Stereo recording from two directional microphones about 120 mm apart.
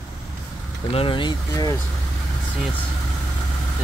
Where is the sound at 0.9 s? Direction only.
45° left (ahead or behind).